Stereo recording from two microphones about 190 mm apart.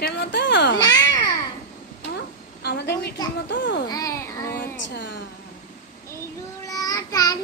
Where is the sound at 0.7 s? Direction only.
20° left (ahead or behind).